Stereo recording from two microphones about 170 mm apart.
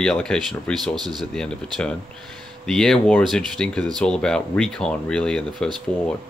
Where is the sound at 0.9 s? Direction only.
25° right (ahead or behind).